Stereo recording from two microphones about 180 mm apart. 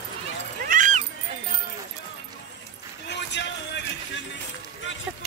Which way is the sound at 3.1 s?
75° left (ahead or behind).